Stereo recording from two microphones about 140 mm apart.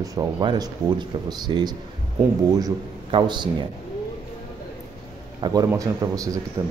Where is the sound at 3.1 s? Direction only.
35° right (ahead or behind).